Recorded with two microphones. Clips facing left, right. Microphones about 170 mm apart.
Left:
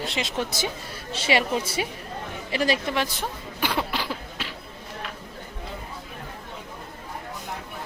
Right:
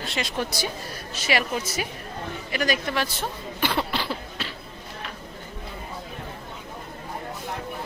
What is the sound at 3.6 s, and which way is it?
Cough, 10° left (ahead or behind).